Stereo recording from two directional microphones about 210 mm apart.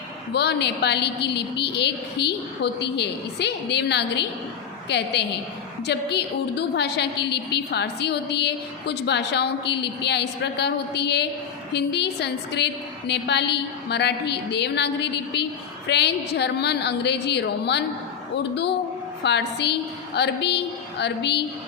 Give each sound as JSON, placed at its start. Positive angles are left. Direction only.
{"t": 0.3, "sound": "a woman's voice", "side_deg": 55}
{"t": 19.2, "sound": "a woman's voice", "side_deg": 55}